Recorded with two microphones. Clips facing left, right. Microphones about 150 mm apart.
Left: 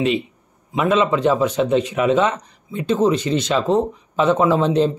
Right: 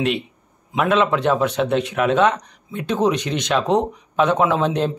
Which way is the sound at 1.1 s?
5° left (ahead or behind).